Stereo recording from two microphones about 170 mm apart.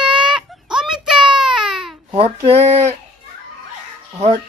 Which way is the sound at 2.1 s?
35° right (ahead or behind).